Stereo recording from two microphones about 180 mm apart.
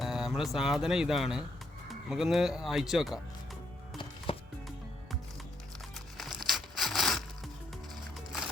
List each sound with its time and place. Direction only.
0.0 s speech: centre (ahead or behind)
4.3 s music: 30° left (ahead or behind)
6.4 s a sound: centre (ahead or behind)